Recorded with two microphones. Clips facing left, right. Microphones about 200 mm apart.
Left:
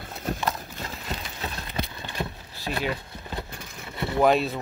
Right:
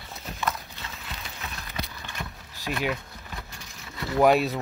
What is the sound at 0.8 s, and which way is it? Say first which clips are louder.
Horse: left 6 dB; 40° left (ahead or behind).